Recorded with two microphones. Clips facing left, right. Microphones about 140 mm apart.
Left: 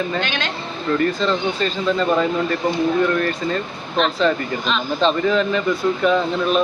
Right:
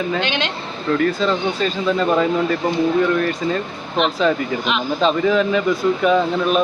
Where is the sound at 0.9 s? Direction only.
5° right (ahead or behind).